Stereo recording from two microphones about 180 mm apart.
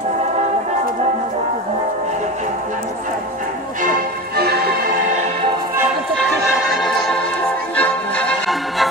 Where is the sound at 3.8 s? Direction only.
55° right (ahead or behind).